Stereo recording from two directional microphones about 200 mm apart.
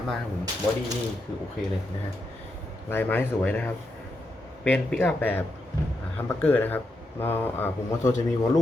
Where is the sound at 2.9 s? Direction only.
10° left (ahead or behind).